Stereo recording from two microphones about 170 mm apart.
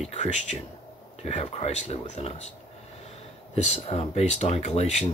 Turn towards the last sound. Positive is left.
turn(degrees=40)  # may be behind; listen again after turning